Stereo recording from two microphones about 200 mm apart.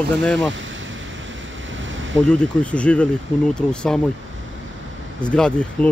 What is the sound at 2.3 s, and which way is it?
Speech, 5° left (ahead or behind).